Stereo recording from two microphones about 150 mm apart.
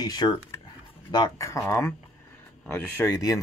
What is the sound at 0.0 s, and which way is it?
Speech, 25° left (ahead or behind).